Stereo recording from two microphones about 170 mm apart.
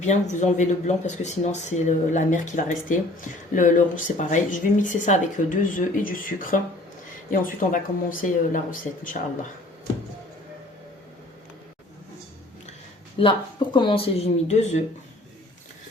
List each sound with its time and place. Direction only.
0.0 s speech: 45° left (ahead or behind)
13.1 s speech: 30° left (ahead or behind)